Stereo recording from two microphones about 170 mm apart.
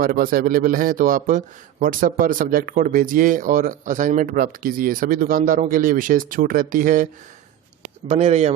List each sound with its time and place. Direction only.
0.0 s a man's voice: 55° right (ahead or behind)
8.0 s speech: 40° right (ahead or behind)